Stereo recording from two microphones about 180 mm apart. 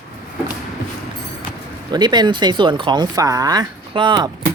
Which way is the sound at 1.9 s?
25° right (ahead or behind).